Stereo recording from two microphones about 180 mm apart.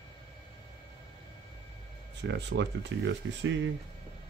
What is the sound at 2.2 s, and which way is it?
Speech, 75° right (ahead or behind).